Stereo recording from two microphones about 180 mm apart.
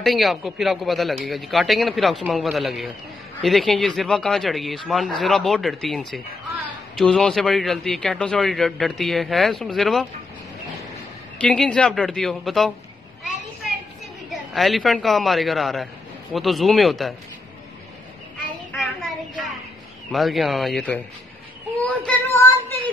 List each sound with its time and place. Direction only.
0.0 s a man's voice: centre (ahead or behind)
11.3 s a man's voice: 5° left (ahead or behind)
14.3 s a man's voice: centre (ahead or behind)
20.1 s a man's voice: centre (ahead or behind)
21.8 s a sound: 10° left (ahead or behind)